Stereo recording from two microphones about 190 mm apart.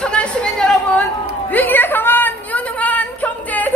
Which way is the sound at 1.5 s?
10° left (ahead or behind).